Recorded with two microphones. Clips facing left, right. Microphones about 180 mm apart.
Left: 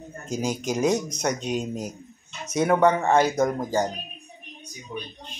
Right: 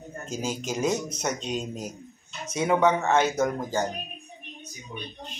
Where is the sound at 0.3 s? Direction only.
15° left (ahead or behind).